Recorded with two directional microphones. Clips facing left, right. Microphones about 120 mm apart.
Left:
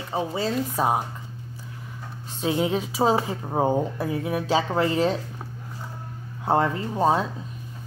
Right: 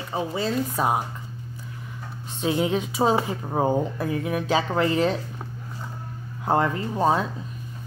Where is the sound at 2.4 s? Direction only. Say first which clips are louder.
Even; 30° left (ahead or behind).